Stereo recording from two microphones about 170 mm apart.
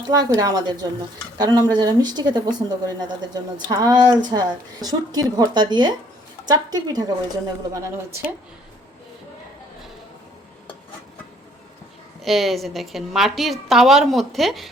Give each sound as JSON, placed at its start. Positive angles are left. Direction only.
{"t": 0.1, "sound": "a woman's voice", "side_deg": -20}
{"t": 12.2, "sound": "a woman's voice", "side_deg": 0}